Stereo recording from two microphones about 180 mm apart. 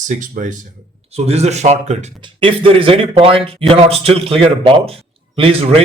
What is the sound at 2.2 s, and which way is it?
Speech, 25° right (ahead or behind).